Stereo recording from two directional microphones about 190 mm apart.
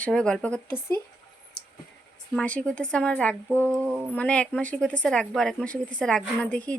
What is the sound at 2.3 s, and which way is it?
A woman's voice, 5° left (ahead or behind).